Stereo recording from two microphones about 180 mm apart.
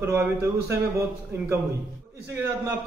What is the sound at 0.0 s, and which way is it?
A man's voice, 15° right (ahead or behind).